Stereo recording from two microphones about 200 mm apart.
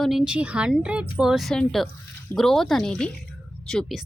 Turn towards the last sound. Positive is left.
turn(degrees=0)  # may be behind; listen again after turning